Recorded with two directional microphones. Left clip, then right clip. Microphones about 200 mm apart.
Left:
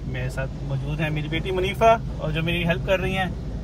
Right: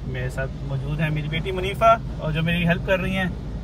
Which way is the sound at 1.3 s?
40° left (ahead or behind).